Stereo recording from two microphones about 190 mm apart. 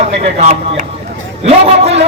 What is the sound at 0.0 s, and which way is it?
A man's voice, 35° right (ahead or behind).